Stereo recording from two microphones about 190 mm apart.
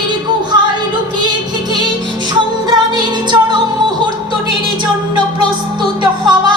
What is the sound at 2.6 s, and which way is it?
Music, 20° right (ahead or behind).